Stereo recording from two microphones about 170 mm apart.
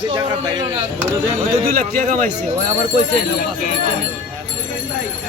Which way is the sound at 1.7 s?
50° right (ahead or behind).